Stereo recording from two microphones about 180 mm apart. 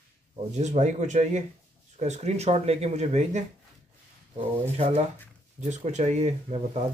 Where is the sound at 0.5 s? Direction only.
40° right (ahead or behind).